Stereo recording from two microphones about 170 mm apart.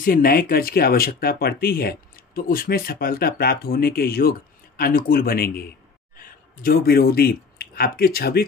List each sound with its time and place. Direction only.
0.0 s speech: 55° left (ahead or behind)